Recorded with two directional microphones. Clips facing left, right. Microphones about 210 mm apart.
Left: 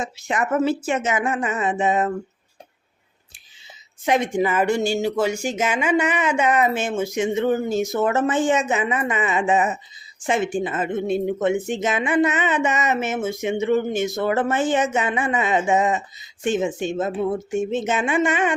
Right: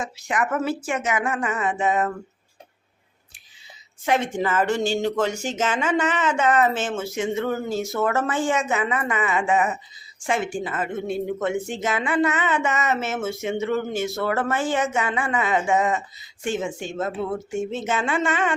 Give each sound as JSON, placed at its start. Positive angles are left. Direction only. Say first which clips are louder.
{"t": 0.0, "sound": "speech", "louder": "left 1 dB", "side_deg": 25}
{"t": 4.0, "sound": "speech", "louder": "left 3 dB", "side_deg": 15}